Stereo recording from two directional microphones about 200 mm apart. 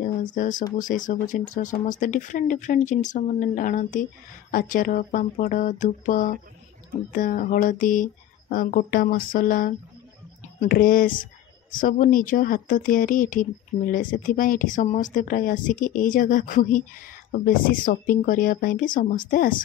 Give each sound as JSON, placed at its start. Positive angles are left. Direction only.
{"t": 0.0, "sound": "speech", "side_deg": 40}